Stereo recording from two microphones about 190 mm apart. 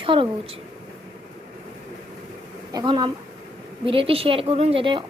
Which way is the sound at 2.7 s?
20° right (ahead or behind).